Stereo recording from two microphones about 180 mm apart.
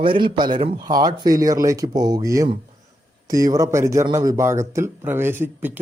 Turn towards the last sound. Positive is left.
turn(degrees=-10)  # may be behind; listen again after turning